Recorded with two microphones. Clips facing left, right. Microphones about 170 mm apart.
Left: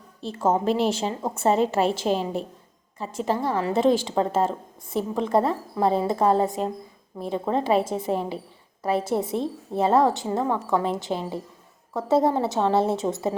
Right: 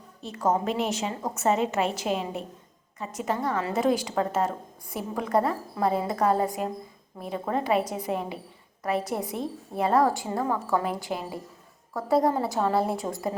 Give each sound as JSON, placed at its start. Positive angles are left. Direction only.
{"t": 0.2, "sound": "a woman's voice", "side_deg": 30}